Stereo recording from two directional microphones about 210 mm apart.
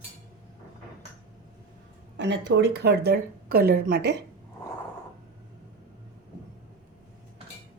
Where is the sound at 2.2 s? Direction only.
55° right (ahead or behind).